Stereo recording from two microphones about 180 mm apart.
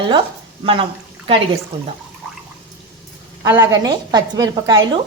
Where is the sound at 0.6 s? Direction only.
30° right (ahead or behind).